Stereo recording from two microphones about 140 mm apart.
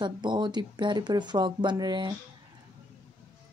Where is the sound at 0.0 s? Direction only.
35° right (ahead or behind).